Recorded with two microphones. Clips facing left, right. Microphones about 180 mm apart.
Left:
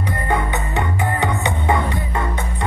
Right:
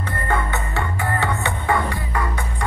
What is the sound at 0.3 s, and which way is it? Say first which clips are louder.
Music: left 2 dB; 15° left (ahead or behind).